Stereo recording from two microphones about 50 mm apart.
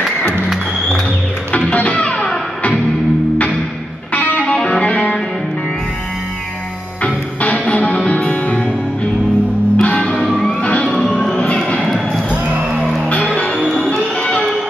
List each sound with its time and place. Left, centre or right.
1.7 s music: left
4.1 s music: left
4.4 s music: centre
7.5 s music: left
9.8 s music: left
10.9 s music: centre
11.3 s music: left
12.3 s music: right
13.7 s music: centre